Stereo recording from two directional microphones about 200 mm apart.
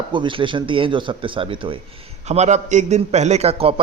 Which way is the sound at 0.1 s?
25° right (ahead or behind).